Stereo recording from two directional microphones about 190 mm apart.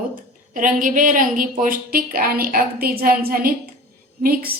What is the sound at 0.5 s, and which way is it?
A woman's voice, 45° right (ahead or behind).